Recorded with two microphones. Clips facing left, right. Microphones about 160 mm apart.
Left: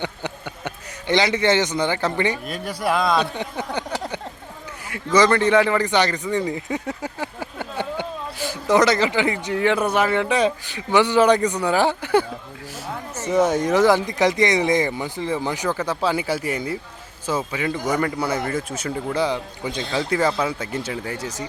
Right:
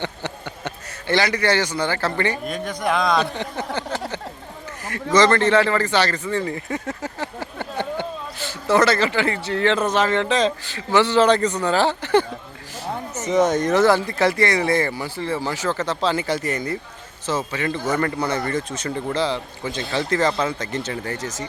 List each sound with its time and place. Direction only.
0.0 s speech: 15° left (ahead or behind)
2.4 s a man's voice: 5° left (ahead or behind)
3.3 s speech: 10° left (ahead or behind)
5.1 s speech: 10° left (ahead or behind)
19.8 s speech: 5° left (ahead or behind)